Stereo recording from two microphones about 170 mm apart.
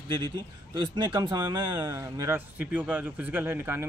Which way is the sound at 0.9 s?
25° right (ahead or behind).